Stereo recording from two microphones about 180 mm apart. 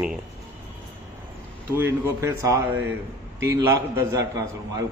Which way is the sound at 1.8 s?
15° right (ahead or behind).